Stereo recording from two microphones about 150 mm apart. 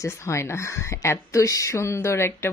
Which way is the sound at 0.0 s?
20° left (ahead or behind).